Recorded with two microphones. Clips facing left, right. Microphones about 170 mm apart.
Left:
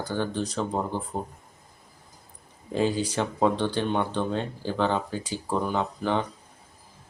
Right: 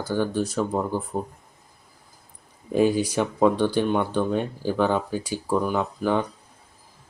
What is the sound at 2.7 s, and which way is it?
Speech, 10° right (ahead or behind).